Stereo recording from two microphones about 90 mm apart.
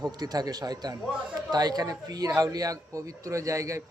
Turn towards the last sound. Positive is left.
turn(degrees=-35)  # may be behind; listen again after turning